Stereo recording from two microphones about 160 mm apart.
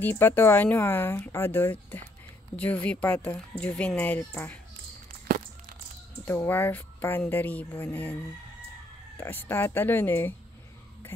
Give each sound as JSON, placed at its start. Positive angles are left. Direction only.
{"t": 0.0, "sound": "speech", "side_deg": 15}
{"t": 6.2, "sound": "speech", "side_deg": 15}
{"t": 9.2, "sound": "speech", "side_deg": 15}